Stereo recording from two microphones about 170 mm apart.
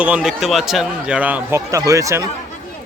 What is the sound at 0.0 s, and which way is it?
Speech, 5° right (ahead or behind).